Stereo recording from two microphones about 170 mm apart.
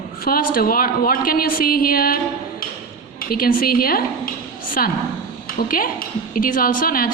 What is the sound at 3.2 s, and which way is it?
A woman's voice, 60° left (ahead or behind).